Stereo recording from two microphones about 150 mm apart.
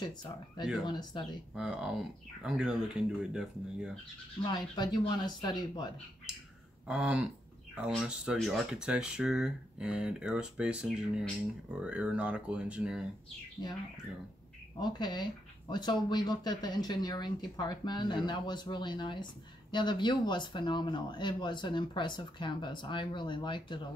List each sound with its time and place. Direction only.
0.0 s speech: 30° left (ahead or behind)
1.6 s speech: 5° right (ahead or behind)
4.5 s speech: 30° left (ahead or behind)
6.9 s speech: 5° right (ahead or behind)
14.8 s speech: 30° left (ahead or behind)